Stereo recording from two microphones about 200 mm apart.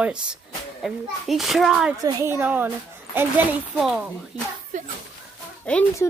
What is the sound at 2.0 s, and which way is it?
A woman's voice, 15° right (ahead or behind).